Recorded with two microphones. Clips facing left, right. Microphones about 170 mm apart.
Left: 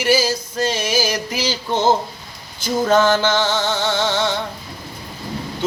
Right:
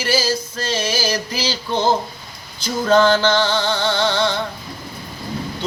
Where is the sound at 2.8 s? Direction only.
5° left (ahead or behind).